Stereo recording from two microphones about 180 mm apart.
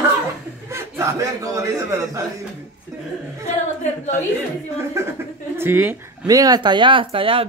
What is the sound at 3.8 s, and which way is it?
Speech, 40° left (ahead or behind).